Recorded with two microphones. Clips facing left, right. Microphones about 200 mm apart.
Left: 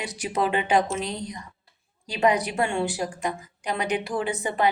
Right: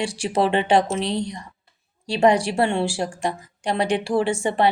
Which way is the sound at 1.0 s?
75° right (ahead or behind).